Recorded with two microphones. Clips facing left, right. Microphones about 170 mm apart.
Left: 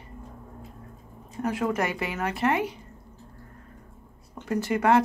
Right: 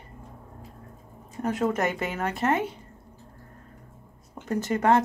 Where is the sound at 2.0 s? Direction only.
25° right (ahead or behind).